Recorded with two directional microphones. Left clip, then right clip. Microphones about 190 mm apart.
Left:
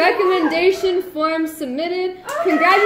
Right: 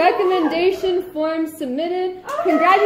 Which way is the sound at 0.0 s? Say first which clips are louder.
Even; 15° right (ahead or behind).